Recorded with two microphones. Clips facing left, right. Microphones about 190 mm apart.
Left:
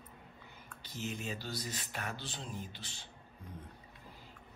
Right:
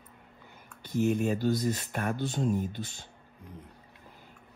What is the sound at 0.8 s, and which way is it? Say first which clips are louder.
Speech: right 14 dB; 55° right (ahead or behind).